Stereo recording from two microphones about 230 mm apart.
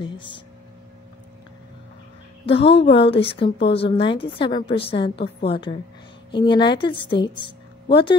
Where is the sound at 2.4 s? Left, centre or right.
Left.